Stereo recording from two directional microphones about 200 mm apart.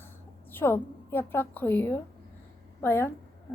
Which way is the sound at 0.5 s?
10° left (ahead or behind).